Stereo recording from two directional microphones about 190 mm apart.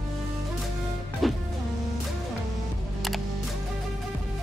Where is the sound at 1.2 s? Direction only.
Centre (ahead or behind).